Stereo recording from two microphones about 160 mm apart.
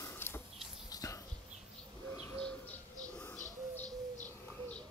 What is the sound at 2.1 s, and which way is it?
Bird, 20° left (ahead or behind).